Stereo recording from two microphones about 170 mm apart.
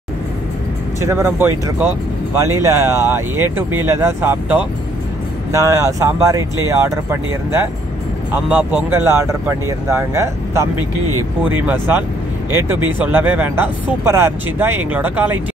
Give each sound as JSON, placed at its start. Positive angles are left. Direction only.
{"t": 1.0, "sound": "speech", "side_deg": -15}
{"t": 8.9, "sound": "speech", "side_deg": -15}